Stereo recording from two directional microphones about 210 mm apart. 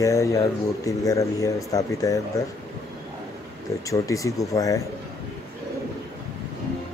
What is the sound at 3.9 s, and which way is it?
Speech, 15° left (ahead or behind).